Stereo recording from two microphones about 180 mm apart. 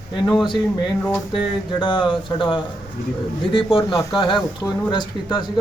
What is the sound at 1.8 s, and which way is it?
Speech, 25° left (ahead or behind).